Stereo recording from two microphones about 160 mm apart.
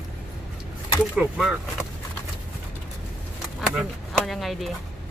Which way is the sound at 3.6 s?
Centre (ahead or behind).